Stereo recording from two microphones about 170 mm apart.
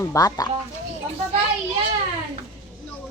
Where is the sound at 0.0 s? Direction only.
20° left (ahead or behind).